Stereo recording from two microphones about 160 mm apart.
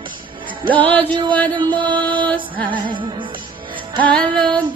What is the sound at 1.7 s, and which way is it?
Music, 30° right (ahead or behind).